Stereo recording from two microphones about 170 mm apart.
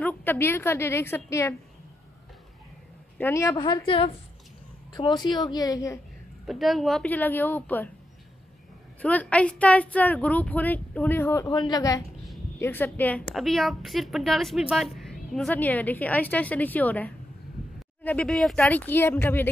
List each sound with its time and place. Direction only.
0.0 s a woman's voice: 10° left (ahead or behind)
3.2 s speech: 15° left (ahead or behind)
3.5 s a woman's voice: 30° left (ahead or behind)
6.4 s speech: centre (ahead or behind)
9.0 s a woman's voice: 10° left (ahead or behind)